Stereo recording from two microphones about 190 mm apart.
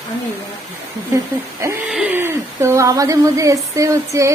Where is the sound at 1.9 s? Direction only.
5° right (ahead or behind).